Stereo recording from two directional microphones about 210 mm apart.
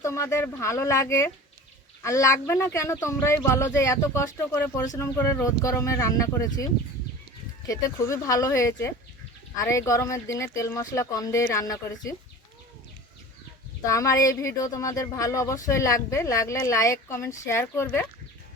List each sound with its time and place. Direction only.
0.0 s speech: 15° left (ahead or behind)
7.7 s speech: 15° left (ahead or behind)
13.8 s speech: 15° left (ahead or behind)